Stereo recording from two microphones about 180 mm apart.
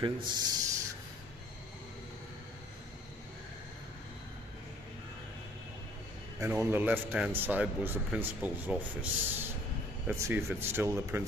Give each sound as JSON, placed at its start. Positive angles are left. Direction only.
{"t": 0.0, "sound": "speech", "side_deg": -20}
{"t": 6.4, "sound": "speech", "side_deg": -15}